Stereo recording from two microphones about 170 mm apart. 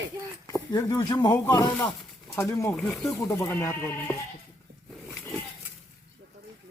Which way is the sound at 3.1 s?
15° left (ahead or behind).